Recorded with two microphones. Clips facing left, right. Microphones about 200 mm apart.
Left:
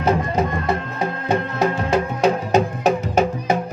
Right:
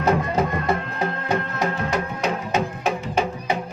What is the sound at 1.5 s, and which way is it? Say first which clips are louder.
Music: left 5 dB; 30° left (ahead or behind).